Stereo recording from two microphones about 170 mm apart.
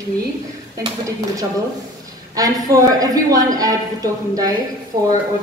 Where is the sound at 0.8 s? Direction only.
20° right (ahead or behind).